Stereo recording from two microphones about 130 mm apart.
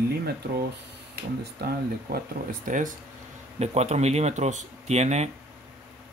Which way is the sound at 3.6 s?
55° right (ahead or behind).